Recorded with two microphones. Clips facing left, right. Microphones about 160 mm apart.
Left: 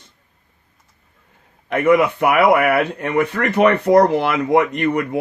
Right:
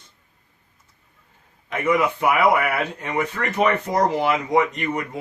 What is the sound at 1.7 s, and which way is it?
Speech, 60° left (ahead or behind).